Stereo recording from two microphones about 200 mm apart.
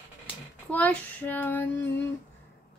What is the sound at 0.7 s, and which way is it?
Speech, 10° left (ahead or behind).